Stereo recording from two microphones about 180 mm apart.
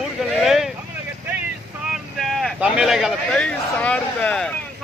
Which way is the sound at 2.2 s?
Centre (ahead or behind).